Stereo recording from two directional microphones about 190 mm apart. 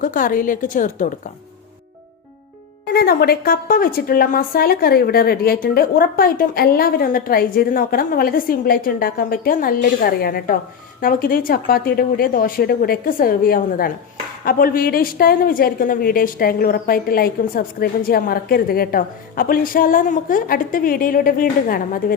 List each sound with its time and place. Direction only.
0.0 s a woman's voice: 45° left (ahead or behind)
2.8 s a woman's voice: 55° left (ahead or behind)